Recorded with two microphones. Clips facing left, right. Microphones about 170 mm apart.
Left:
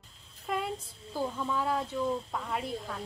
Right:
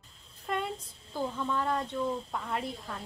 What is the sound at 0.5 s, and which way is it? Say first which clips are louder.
Speech: even; 5° left (ahead or behind).